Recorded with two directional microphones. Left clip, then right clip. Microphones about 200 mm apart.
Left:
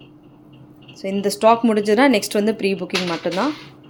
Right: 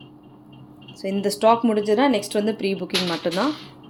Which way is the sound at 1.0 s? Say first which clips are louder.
Left 2 dB; 5° left (ahead or behind).